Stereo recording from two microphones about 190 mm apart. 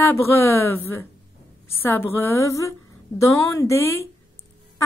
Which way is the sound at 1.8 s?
15° left (ahead or behind).